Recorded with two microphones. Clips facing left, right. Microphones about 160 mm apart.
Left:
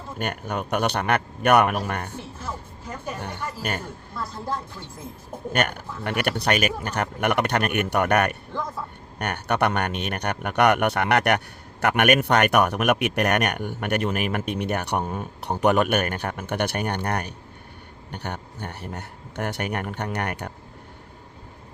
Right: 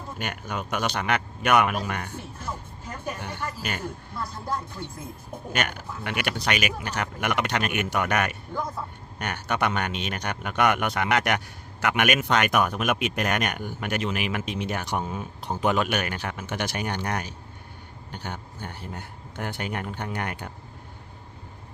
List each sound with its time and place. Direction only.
0.2 s a man's voice: 55° left (ahead or behind)
5.5 s a man's voice: 45° left (ahead or behind)
15.0 s a man's voice: 45° left (ahead or behind)
15.4 s speech: 65° left (ahead or behind)